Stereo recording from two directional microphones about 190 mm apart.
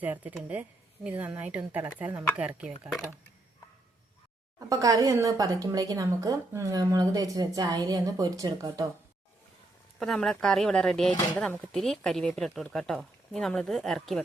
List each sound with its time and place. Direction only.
0.0 s a woman's voice: 10° right (ahead or behind)
4.7 s a woman's voice: 20° right (ahead or behind)
10.0 s speech: centre (ahead or behind)